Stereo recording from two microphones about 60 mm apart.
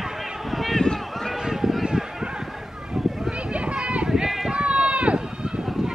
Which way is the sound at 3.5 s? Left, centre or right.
Centre.